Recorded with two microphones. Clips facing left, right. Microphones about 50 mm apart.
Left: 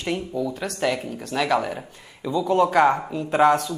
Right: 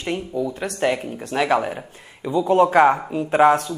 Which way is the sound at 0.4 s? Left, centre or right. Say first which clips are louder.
Right 5 dB; centre.